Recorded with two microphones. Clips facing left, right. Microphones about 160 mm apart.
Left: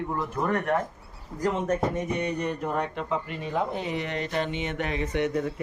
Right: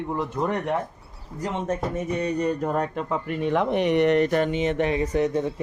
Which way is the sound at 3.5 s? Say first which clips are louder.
Right 7 dB; 75° right (ahead or behind).